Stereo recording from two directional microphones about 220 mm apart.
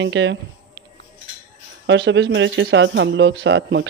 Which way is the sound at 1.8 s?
55° right (ahead or behind).